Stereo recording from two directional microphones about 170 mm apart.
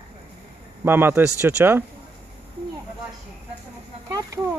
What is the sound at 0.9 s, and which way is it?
Speech, 10° right (ahead or behind).